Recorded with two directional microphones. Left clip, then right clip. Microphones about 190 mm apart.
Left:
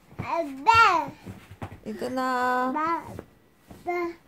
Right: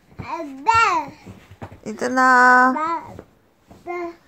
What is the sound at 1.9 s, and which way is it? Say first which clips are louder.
Speech: right 12 dB; 20° right (ahead or behind).